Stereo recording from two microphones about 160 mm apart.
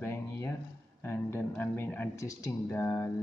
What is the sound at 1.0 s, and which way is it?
Speech, 15° left (ahead or behind).